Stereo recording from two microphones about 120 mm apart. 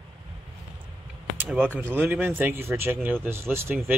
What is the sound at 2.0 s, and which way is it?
Speech, 15° right (ahead or behind).